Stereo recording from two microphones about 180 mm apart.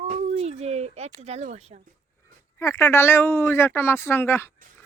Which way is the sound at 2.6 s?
15° left (ahead or behind).